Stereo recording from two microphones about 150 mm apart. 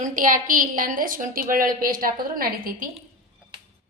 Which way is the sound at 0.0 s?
60° right (ahead or behind).